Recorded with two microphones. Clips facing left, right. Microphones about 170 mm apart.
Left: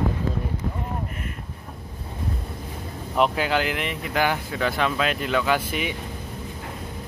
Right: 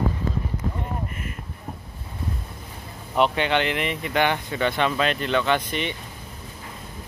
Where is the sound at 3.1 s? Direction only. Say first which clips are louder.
Right 1 dB; centre (ahead or behind).